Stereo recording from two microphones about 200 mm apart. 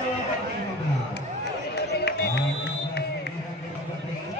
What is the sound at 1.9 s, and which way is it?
Run, 55° left (ahead or behind).